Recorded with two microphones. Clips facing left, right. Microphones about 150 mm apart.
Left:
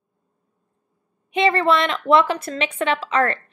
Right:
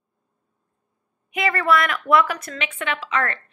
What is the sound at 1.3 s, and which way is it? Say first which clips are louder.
A woman's voice: left 3 dB; 25° left (ahead or behind).